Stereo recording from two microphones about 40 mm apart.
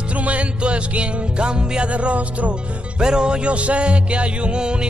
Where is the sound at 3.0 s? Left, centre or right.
Right.